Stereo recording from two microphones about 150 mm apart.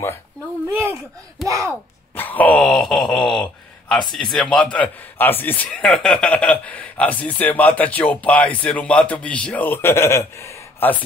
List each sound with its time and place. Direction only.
0.7 s speech: 15° right (ahead or behind)
1.7 s speech: 10° left (ahead or behind)